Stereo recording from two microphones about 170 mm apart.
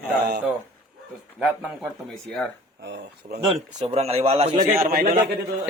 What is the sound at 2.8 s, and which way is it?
Speech, 90° right.